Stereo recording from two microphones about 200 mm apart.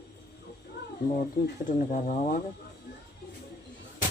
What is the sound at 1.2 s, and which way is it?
Speech, 40° left (ahead or behind).